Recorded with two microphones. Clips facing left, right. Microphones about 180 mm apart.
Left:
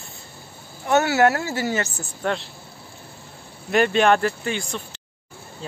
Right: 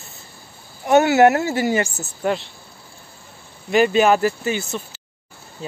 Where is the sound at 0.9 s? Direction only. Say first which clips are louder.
Right 5 dB; 20° right (ahead or behind).